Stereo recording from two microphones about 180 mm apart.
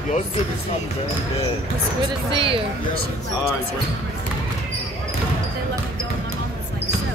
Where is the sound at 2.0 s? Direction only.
30° right (ahead or behind).